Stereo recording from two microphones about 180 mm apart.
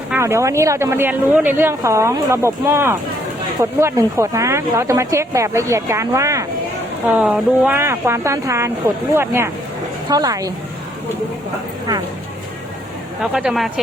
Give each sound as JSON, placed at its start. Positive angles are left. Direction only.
{"t": 0.1, "sound": "speech", "side_deg": -15}
{"t": 7.1, "sound": "speech", "side_deg": -5}
{"t": 7.8, "sound": "speech", "side_deg": -15}
{"t": 13.3, "sound": "speech", "side_deg": 0}